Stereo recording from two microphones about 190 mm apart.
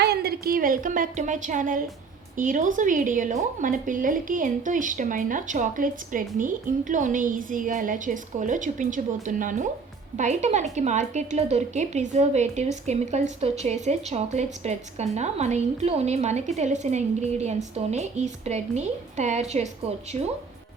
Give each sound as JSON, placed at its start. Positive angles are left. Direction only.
{"t": 0.0, "sound": "a woman's voice", "side_deg": -55}